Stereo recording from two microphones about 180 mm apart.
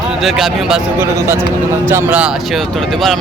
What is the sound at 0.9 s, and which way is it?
Speech, 15° right (ahead or behind).